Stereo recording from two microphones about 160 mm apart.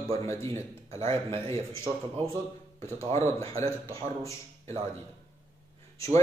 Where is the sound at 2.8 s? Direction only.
20° left (ahead or behind).